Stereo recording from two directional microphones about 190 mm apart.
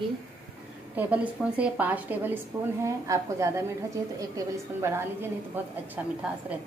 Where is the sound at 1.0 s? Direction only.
5° right (ahead or behind).